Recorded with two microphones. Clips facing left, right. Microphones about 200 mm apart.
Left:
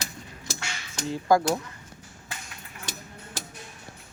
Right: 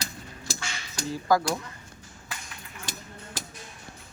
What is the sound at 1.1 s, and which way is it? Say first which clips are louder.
Speech: left 2 dB; 25° left (ahead or behind).